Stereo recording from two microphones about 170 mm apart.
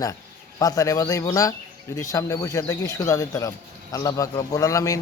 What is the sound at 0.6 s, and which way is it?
Speech, 20° left (ahead or behind).